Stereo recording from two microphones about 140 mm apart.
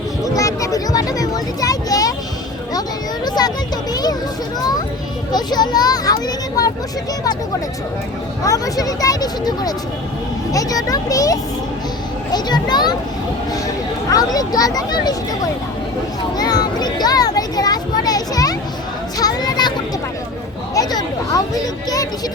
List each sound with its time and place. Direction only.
0.3 s a sound: 25° left (ahead or behind)
3.2 s a sound: 30° left (ahead or behind)
5.3 s children playing: 30° left (ahead or behind)
8.4 s a child's voice: 25° left (ahead or behind)
14.1 s a child's voice: 25° left (ahead or behind)
16.4 s a child's voice: 30° left (ahead or behind)
20.7 s a child's voice: 25° left (ahead or behind)